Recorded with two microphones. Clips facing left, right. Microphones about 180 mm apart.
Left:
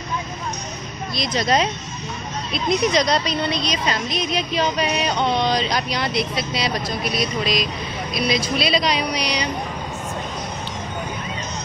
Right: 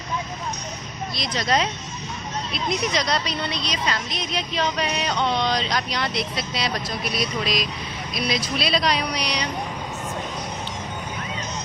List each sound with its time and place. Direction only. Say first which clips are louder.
1.1 s a woman's voice: left 4 dB; 15° left (ahead or behind)